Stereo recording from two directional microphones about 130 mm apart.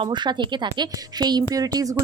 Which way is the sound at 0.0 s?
35° right (ahead or behind).